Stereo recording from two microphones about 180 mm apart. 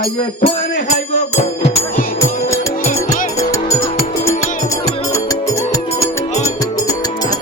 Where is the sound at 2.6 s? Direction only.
15° left (ahead or behind).